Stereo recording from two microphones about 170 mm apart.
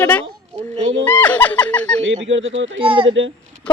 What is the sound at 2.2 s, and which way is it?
Speech, 90° right.